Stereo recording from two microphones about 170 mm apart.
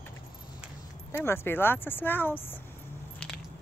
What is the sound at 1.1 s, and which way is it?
Speech, 15° left (ahead or behind).